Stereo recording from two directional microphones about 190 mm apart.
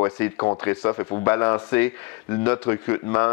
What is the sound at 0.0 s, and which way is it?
Speech, 20° left (ahead or behind).